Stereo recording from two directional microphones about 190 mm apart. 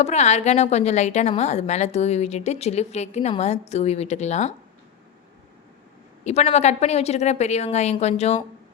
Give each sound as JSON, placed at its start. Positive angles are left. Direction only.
{"t": 0.0, "sound": "a woman's voice", "side_deg": 35}
{"t": 6.2, "sound": "a woman's voice", "side_deg": 35}